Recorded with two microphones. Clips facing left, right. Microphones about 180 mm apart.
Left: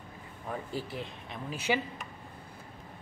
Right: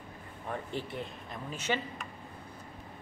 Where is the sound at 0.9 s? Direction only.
Centre (ahead or behind).